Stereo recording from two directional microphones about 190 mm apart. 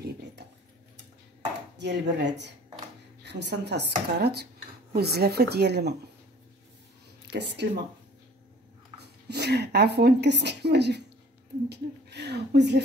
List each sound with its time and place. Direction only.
1.8 s a woman's voice: 65° right (ahead or behind)
7.3 s a woman's voice: 65° right (ahead or behind)
9.0 s a woman's voice: 60° right (ahead or behind)